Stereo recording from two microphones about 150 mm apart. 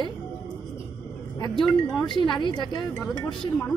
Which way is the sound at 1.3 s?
30° left (ahead or behind).